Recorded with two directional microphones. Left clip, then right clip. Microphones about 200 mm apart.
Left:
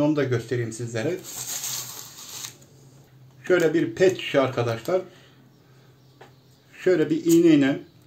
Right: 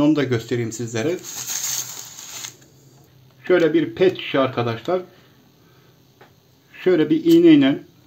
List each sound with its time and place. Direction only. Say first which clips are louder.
0.0 s speech: right 4 dB; 55° right (ahead or behind)
3.4 s speech: right 4 dB; 35° right (ahead or behind)
6.7 s speech: right 4 dB; 45° right (ahead or behind)